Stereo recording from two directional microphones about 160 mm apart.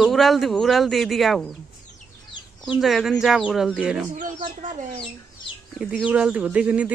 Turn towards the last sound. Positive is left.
turn(degrees=-5)  # may be behind; listen again after turning